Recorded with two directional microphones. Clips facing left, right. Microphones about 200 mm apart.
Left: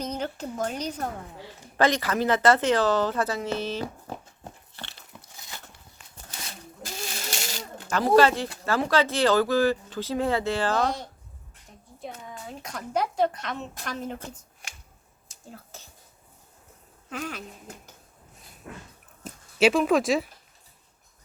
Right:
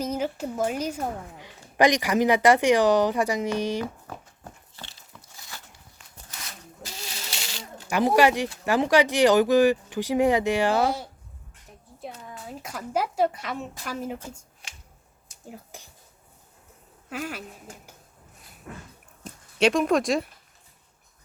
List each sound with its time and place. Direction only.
0.0 s a woman's voice: 5° right (ahead or behind)
4.1 s dog: 25° left (ahead or behind)
4.7 s dog: 65° left (ahead or behind)
6.8 s a sound: 45° left (ahead or behind)
7.9 s a woman's voice: 15° right (ahead or behind)
15.4 s a sound: 15° right (ahead or behind)
17.1 s a woman's voice: 5° right (ahead or behind)
19.2 s speech: 5° left (ahead or behind)